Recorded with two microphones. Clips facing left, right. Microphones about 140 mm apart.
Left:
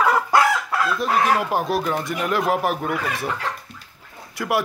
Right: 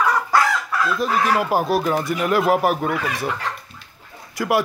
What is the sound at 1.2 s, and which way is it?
Speech, 5° right (ahead or behind).